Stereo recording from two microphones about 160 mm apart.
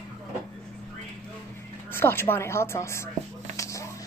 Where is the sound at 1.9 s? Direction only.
15° left (ahead or behind).